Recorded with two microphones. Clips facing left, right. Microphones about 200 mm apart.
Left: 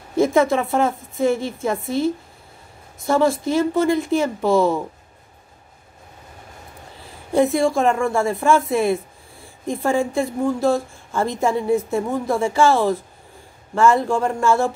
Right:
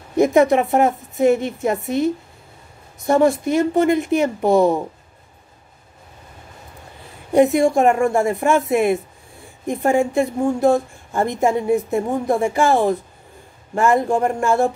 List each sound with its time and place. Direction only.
0.1 s a woman's voice: 15° right (ahead or behind)
7.3 s a woman's voice: 20° right (ahead or behind)
9.9 s a woman's voice: 20° right (ahead or behind)